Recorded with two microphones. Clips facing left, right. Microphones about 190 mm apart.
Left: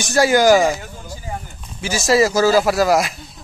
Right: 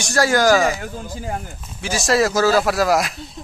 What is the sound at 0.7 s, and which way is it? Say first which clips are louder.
Speech: right 4 dB; 60° right (ahead or behind).